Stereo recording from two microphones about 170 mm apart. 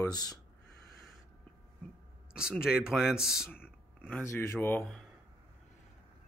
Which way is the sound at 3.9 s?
10° left (ahead or behind).